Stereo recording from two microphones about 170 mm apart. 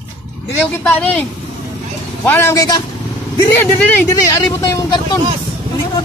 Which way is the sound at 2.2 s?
15° left (ahead or behind).